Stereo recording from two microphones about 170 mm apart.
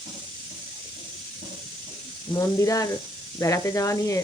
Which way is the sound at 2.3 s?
20° left (ahead or behind).